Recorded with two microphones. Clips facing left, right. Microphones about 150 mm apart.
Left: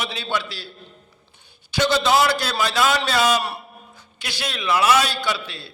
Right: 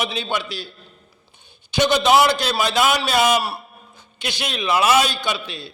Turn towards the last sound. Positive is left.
turn(degrees=-20)  # may be behind; listen again after turning